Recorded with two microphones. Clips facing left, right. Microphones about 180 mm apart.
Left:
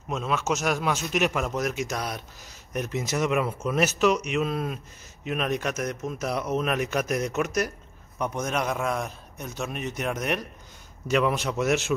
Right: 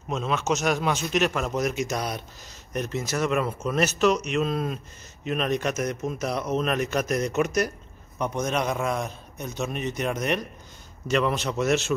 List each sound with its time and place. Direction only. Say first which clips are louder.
0.1 s a man's voice: right 1 dB; 5° left (ahead or behind)